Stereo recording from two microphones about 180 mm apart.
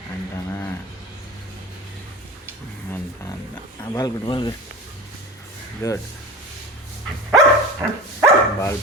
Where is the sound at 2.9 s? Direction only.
15° left (ahead or behind).